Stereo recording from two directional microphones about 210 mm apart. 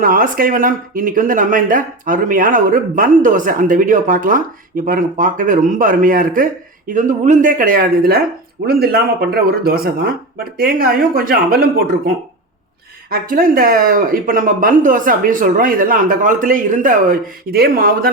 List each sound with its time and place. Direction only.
0.0 s speech: 40° right (ahead or behind)